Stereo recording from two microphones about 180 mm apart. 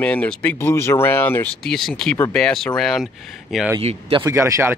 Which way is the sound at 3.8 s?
30° right (ahead or behind).